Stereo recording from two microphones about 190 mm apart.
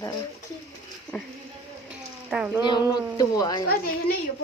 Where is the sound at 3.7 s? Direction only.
50° left (ahead or behind).